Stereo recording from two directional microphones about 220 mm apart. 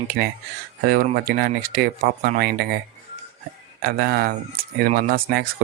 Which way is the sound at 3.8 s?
45° right (ahead or behind).